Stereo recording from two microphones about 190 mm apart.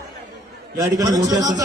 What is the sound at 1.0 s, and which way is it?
Speech, 20° right (ahead or behind).